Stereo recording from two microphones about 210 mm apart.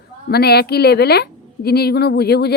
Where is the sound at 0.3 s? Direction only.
50° left (ahead or behind).